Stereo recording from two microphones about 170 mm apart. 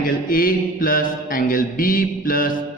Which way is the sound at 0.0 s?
55° left (ahead or behind).